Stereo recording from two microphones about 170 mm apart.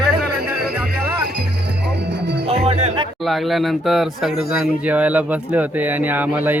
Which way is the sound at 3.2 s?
Centre (ahead or behind).